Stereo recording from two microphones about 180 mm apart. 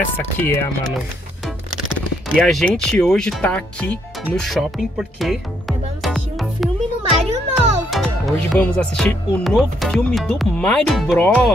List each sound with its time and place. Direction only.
0.2 s speech: 10° left (ahead or behind)
2.3 s speech: 5° left (ahead or behind)
7.1 s music: 35° right (ahead or behind)
7.5 s music: centre (ahead or behind)
8.5 s speech: 5° left (ahead or behind)